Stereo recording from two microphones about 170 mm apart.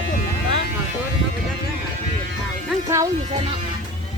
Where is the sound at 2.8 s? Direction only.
20° right (ahead or behind).